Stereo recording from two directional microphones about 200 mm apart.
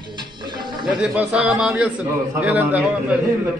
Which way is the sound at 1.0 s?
5° right (ahead or behind).